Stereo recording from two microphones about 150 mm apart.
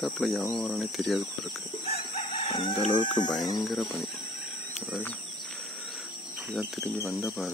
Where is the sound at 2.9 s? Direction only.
30° left (ahead or behind).